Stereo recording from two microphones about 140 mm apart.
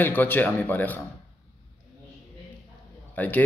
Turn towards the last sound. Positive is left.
turn(degrees=10)  # may be behind; listen again after turning